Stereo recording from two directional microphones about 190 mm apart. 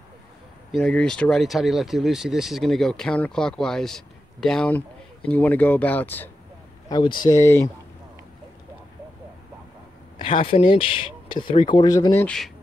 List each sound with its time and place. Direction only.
0.7 s speech: 5° left (ahead or behind)
6.9 s speech: 25° left (ahead or behind)
10.2 s speech: 30° left (ahead or behind); by 12.4 s 10° left (ahead or behind)